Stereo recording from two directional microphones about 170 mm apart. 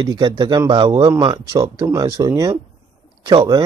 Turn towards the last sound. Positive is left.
turn(degrees=-25)  # may be behind; listen again after turning